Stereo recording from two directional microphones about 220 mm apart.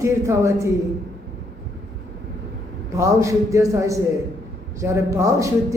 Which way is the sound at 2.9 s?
15° right (ahead or behind).